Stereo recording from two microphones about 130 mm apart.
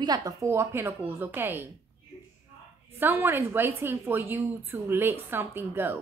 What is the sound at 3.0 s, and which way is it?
A woman's voice, 15° right (ahead or behind).